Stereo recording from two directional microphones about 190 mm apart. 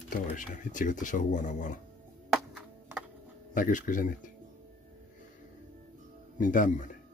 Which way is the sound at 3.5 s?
45° left (ahead or behind).